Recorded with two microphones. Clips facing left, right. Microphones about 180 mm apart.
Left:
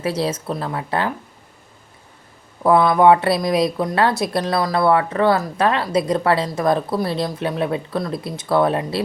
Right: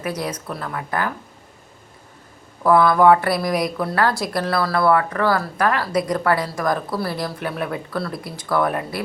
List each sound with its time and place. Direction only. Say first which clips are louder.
0.0 s a woman's voice: left 4 dB; 30° left (ahead or behind)
2.6 s a woman's voice: left 1 dB; 20° left (ahead or behind)